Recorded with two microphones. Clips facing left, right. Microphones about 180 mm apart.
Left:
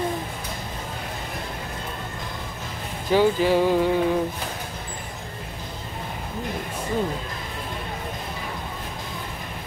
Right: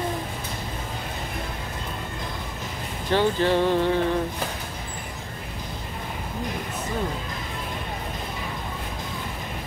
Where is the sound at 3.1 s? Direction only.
10° left (ahead or behind).